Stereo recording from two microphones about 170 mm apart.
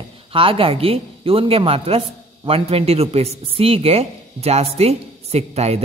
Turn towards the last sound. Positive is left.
turn(degrees=-40)  # may be behind; listen again after turning